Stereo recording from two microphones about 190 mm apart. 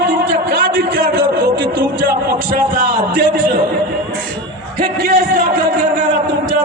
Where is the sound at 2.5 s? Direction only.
50° right (ahead or behind).